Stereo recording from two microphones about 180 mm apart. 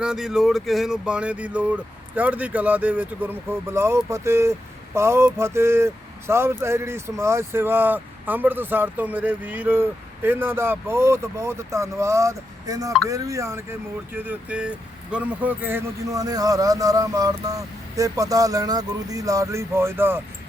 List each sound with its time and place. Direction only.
0.0 s speech: 5° right (ahead or behind)